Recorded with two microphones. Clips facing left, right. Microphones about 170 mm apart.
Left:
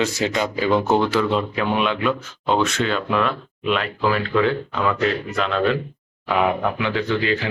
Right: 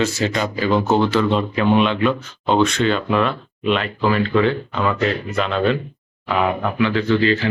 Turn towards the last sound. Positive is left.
turn(degrees=15)  # may be behind; listen again after turning